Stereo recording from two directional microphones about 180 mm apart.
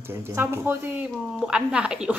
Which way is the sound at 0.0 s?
10° right (ahead or behind).